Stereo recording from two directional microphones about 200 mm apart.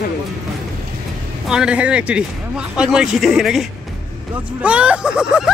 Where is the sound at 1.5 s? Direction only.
5° right (ahead or behind).